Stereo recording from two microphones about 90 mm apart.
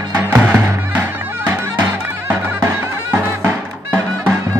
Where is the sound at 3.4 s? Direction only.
25° right (ahead or behind).